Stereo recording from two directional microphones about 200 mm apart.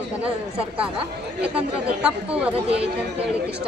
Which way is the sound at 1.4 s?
5° right (ahead or behind).